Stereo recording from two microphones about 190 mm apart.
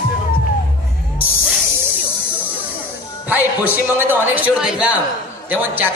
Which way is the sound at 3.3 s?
10° right (ahead or behind).